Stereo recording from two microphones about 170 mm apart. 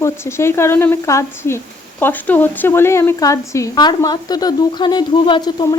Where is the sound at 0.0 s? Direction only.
15° left (ahead or behind).